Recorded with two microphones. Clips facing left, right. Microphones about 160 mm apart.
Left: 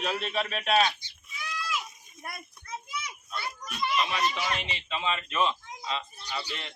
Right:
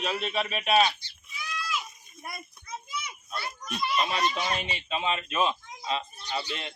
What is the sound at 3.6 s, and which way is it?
A child's voice, 25° right (ahead or behind).